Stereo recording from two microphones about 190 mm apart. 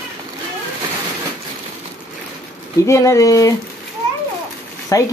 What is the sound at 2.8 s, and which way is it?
Speech, 15° left (ahead or behind).